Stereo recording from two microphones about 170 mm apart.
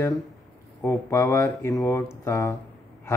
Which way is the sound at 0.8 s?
15° left (ahead or behind).